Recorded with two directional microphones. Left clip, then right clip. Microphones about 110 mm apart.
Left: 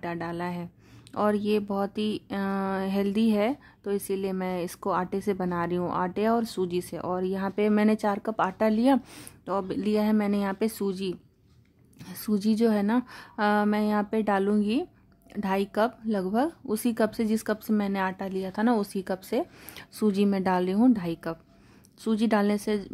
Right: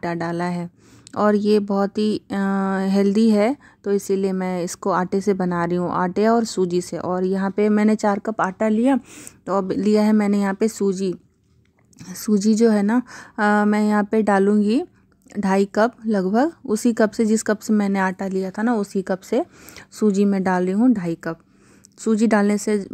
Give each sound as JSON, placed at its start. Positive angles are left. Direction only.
{"t": 0.0, "sound": "speech", "side_deg": -55}
{"t": 8.7, "sound": "speech", "side_deg": -10}
{"t": 9.4, "sound": "speech", "side_deg": -50}
{"t": 10.6, "sound": "speech", "side_deg": -35}
{"t": 18.5, "sound": "speech", "side_deg": -30}